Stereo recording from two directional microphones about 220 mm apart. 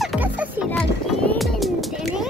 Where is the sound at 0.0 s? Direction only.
5° right (ahead or behind).